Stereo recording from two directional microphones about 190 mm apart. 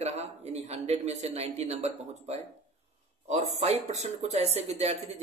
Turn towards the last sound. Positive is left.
turn(degrees=-35)  # may be behind; listen again after turning